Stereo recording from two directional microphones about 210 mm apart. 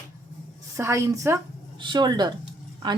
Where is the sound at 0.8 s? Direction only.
15° right (ahead or behind).